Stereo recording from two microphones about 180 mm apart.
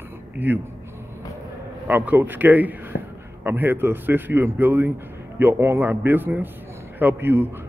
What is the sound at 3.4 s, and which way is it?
A man's voice, 10° right (ahead or behind).